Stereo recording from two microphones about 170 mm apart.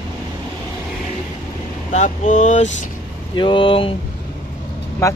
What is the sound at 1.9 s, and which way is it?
Speech, 45° left (ahead or behind).